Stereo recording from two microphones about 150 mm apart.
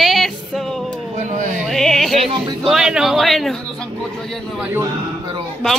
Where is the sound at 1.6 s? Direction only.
Centre (ahead or behind).